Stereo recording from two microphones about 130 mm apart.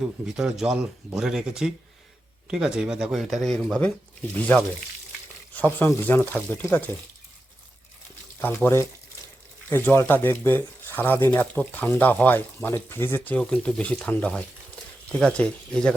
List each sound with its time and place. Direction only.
0.0 s speech: 5° right (ahead or behind); by 4.6 s 10° left (ahead or behind)
5.8 s speech: 15° left (ahead or behind)
8.4 s speech: 20° left (ahead or behind)